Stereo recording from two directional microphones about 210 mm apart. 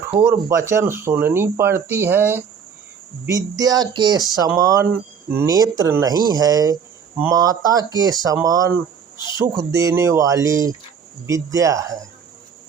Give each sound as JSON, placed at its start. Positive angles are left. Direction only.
{"t": 0.2, "sound": "speech", "side_deg": -10}